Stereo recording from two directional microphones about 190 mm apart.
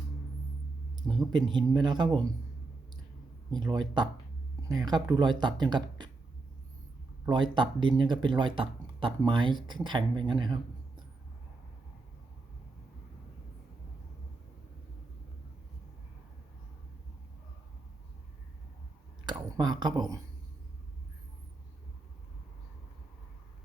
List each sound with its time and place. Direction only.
1.0 s a sound: 15° right (ahead or behind)
1.5 s speech: 25° right (ahead or behind)
3.5 s speech: 25° right (ahead or behind)
7.3 s speech: 25° right (ahead or behind)
19.2 s speech: 20° right (ahead or behind)